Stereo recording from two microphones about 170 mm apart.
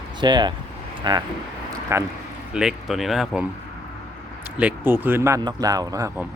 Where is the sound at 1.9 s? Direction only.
15° right (ahead or behind).